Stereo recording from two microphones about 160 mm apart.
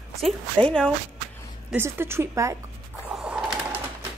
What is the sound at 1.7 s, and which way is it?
Speech, 15° right (ahead or behind).